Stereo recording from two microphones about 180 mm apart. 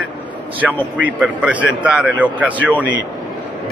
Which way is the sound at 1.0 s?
5° right (ahead or behind).